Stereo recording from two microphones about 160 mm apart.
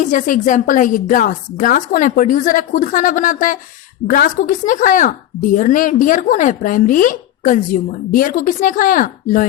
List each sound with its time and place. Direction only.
0.0 s a woman's voice: 55° left (ahead or behind)